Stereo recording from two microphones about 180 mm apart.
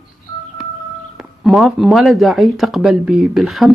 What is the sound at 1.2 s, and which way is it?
Speech, centre (ahead or behind).